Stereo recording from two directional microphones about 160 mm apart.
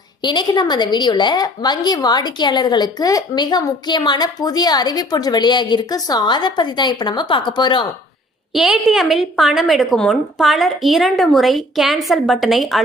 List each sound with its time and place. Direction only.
0.2 s a woman's voice: 30° left (ahead or behind)
8.5 s a woman's voice: centre (ahead or behind)